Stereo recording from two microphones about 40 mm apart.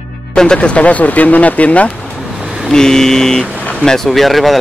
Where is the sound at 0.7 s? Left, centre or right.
Left.